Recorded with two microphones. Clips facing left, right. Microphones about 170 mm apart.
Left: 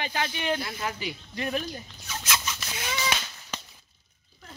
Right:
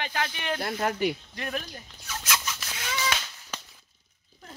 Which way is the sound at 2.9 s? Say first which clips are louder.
Even; 15° left (ahead or behind).